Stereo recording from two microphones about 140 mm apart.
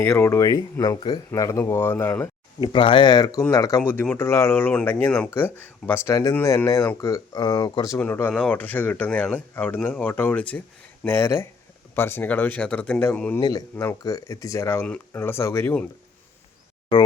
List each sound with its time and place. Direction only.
0.0 s speech: 15° left (ahead or behind); by 1.2 s 35° left (ahead or behind)
1.3 s speech: 20° left (ahead or behind)
2.7 s speech: 35° left (ahead or behind)
7.9 s speech: 10° left (ahead or behind)
13.4 s speech: 25° left (ahead or behind)